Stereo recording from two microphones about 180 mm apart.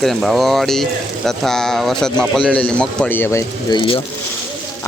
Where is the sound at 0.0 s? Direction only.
Centre (ahead or behind); by 4.0 s 30° left (ahead or behind).